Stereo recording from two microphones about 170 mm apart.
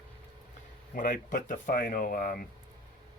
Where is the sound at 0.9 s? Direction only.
50° left (ahead or behind).